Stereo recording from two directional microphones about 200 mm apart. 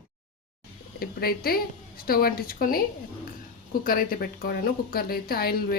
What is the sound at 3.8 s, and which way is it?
A woman's voice, 45° left (ahead or behind).